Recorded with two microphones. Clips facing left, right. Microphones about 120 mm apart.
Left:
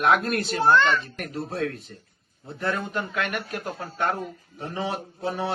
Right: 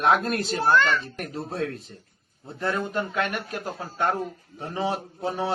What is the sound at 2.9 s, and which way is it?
Speech, 25° right (ahead or behind).